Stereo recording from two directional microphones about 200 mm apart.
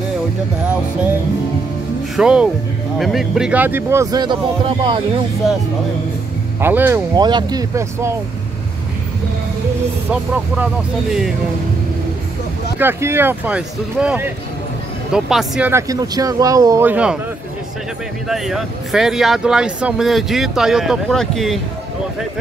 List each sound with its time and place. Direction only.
2.1 s speech: 5° right (ahead or behind); by 4.9 s 25° right (ahead or behind)
6.6 s speech: 10° right (ahead or behind)
7.2 s speech: 20° right (ahead or behind)
10.3 s speech: 5° right (ahead or behind)
12.7 s speech: 10° right (ahead or behind)
15.7 s speech: 15° right (ahead or behind)
18.3 s speech: centre (ahead or behind)